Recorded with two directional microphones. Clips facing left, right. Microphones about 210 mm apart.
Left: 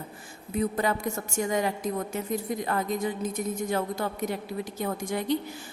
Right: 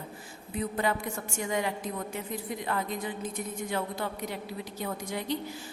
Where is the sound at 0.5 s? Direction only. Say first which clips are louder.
Left 3 dB; 45° left (ahead or behind).